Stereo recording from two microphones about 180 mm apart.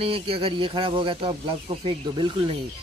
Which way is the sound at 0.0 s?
30° right (ahead or behind).